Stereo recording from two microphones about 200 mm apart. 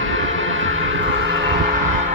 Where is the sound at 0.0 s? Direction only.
75° right (ahead or behind).